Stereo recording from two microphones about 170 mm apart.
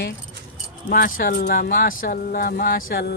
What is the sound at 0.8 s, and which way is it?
Speech, 60° left (ahead or behind).